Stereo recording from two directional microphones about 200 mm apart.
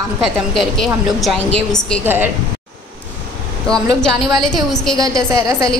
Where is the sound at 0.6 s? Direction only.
Centre (ahead or behind).